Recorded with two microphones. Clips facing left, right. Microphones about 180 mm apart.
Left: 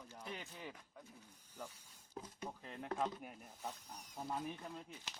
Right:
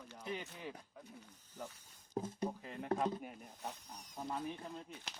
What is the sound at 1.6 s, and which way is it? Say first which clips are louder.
Speech: right 3 dB; 10° left (ahead or behind).